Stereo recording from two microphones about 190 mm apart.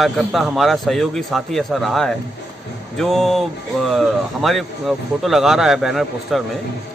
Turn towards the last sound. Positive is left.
turn(degrees=0)  # may be behind; listen again after turning